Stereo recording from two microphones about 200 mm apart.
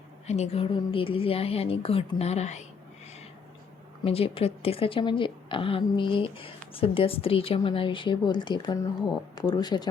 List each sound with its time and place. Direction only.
0.3 s a woman's voice: 35° left (ahead or behind)
4.0 s a woman's voice: 30° left (ahead or behind)